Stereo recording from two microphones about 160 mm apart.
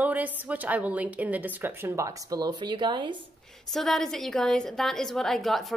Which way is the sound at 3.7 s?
Centre (ahead or behind).